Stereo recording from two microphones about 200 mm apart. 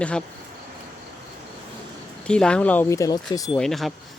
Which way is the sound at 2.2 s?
5° left (ahead or behind).